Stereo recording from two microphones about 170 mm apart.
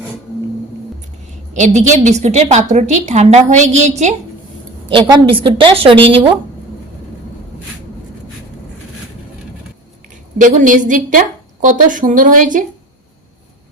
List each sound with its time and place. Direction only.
1.5 s a woman's voice: 45° right (ahead or behind)
4.9 s a woman's voice: 30° right (ahead or behind)
10.3 s a woman's voice: 50° right (ahead or behind)